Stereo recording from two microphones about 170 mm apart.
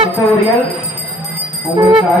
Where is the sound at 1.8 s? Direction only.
30° right (ahead or behind).